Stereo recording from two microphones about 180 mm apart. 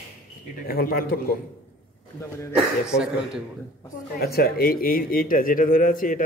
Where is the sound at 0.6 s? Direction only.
55° left (ahead or behind).